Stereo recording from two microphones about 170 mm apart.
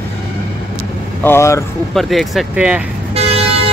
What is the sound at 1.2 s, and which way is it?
Speech, 15° left (ahead or behind).